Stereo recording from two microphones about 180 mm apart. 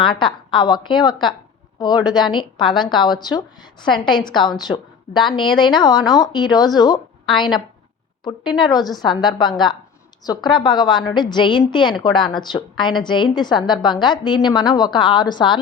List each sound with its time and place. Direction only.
0.0 s a woman's voice: 25° left (ahead or behind)